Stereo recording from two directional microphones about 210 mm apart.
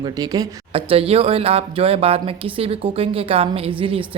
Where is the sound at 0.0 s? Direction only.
15° right (ahead or behind).